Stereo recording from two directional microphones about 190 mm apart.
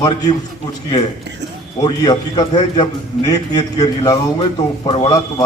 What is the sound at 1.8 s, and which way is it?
A man's voice, 20° left (ahead or behind).